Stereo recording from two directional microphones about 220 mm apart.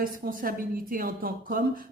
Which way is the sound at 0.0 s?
40° right (ahead or behind).